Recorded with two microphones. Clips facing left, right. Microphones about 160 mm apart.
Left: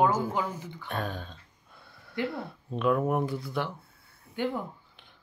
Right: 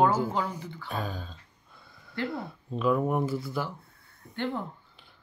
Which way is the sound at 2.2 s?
Centre (ahead or behind).